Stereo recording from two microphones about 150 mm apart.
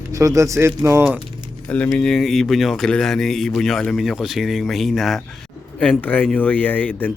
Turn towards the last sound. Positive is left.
turn(degrees=10)  # may be behind; listen again after turning